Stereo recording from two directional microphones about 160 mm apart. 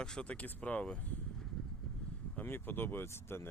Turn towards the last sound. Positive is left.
turn(degrees=15)  # may be behind; listen again after turning